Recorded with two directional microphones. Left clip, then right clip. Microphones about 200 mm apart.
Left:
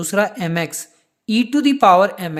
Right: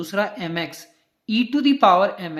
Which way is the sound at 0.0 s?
50° left (ahead or behind).